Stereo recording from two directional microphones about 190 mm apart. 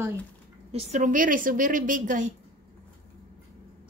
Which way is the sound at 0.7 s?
40° right (ahead or behind).